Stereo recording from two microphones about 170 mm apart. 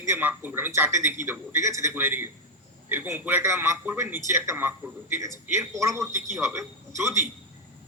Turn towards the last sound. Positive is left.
turn(degrees=-15)  # may be behind; listen again after turning